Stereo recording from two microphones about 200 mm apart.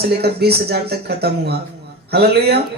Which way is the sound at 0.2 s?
55° right (ahead or behind).